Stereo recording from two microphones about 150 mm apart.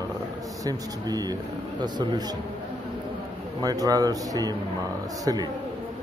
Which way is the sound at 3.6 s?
25° right (ahead or behind).